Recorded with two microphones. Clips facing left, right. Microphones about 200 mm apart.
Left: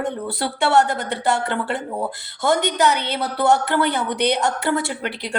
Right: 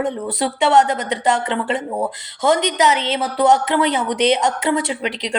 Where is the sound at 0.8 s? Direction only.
90° right.